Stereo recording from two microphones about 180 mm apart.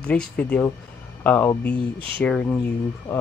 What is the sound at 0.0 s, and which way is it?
Speech, 5° left (ahead or behind).